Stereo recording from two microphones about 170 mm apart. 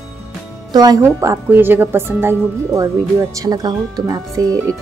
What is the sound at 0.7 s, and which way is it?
Speech, 20° right (ahead or behind).